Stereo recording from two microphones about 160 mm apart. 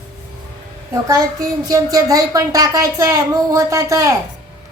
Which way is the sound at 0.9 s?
20° right (ahead or behind).